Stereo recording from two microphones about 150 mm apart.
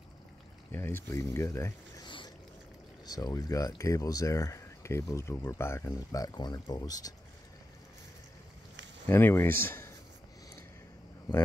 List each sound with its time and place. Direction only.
0.7 s speech: 15° left (ahead or behind)
2.0 s a sound: 30° left (ahead or behind)
3.1 s speech: 25° left (ahead or behind)
9.0 s speech: 15° left (ahead or behind)